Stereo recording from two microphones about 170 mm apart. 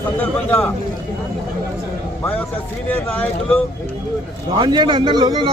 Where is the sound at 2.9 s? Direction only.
10° left (ahead or behind).